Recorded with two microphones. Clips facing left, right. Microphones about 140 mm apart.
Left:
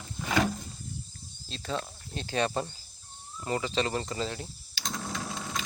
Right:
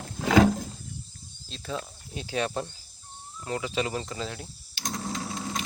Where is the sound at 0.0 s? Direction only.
80° right.